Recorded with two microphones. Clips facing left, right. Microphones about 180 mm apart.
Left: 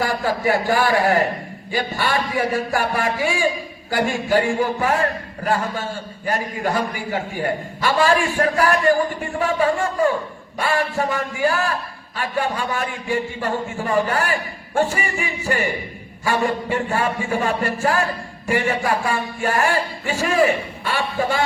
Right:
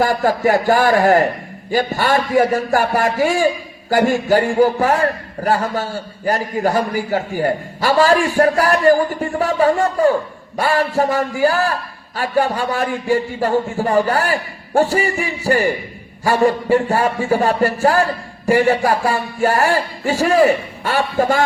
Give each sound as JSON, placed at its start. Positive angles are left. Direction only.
{"t": 0.0, "sound": "a man's voice", "side_deg": -45}